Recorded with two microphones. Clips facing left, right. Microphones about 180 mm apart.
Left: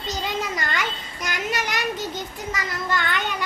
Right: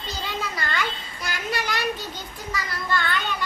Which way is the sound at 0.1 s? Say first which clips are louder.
Left 4 dB; 15° left (ahead or behind).